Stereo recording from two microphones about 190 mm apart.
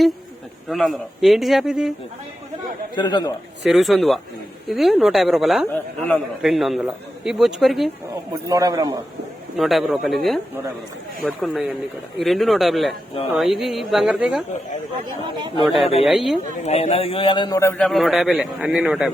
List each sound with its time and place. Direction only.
0.7 s speech: centre (ahead or behind)
2.9 s a man's voice: 25° left (ahead or behind)
3.6 s speech: centre (ahead or behind)
5.6 s a man's voice: 10° left (ahead or behind)
8.1 s a man's voice: 20° right (ahead or behind)
9.6 s speech: centre (ahead or behind)
11.2 s speech: 5° left (ahead or behind)
15.8 s speech: 30° left (ahead or behind)
16.0 s speech: centre (ahead or behind)
16.6 s a man's voice: 35° left (ahead or behind); by 17.7 s 15° left (ahead or behind)
17.7 s speech: centre (ahead or behind)